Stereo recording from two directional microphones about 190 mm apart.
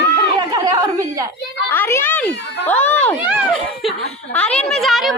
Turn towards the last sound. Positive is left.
turn(degrees=0)  # may be behind; listen again after turning